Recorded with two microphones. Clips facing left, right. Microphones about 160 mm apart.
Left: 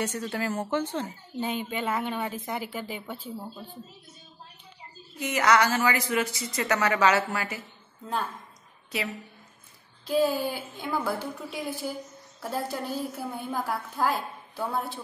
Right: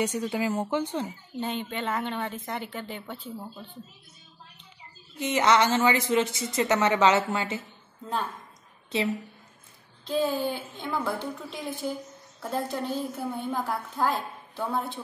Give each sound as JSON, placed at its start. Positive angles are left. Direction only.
{"t": 0.0, "sound": "speech", "side_deg": -15}
{"t": 1.4, "sound": "a woman's voice", "side_deg": 5}
{"t": 5.2, "sound": "a woman's voice", "side_deg": -20}
{"t": 10.0, "sound": "a woman's voice", "side_deg": 5}